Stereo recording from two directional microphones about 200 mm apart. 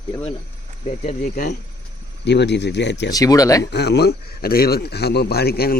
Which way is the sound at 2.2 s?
60° left (ahead or behind).